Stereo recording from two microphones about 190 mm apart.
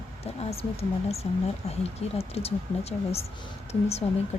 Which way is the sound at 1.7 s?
35° left (ahead or behind).